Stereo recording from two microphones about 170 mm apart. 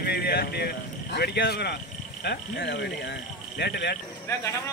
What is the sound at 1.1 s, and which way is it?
Speech, 70° left (ahead or behind).